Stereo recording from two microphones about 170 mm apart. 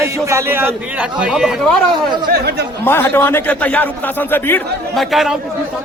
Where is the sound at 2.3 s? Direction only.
70° right (ahead or behind).